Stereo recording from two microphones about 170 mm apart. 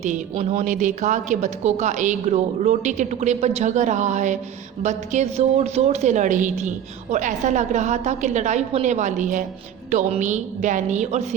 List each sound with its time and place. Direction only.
0.0 s a man's voice: 45° right (ahead or behind)